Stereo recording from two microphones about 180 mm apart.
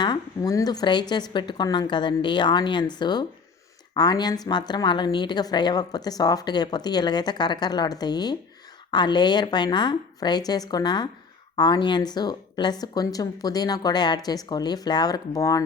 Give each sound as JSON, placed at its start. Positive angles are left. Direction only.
{"t": 0.0, "sound": "a woman's voice", "side_deg": 20}